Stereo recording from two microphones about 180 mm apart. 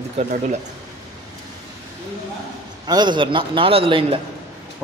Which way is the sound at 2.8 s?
25° right (ahead or behind).